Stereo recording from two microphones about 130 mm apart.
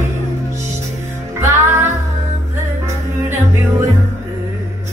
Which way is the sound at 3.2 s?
20° right (ahead or behind).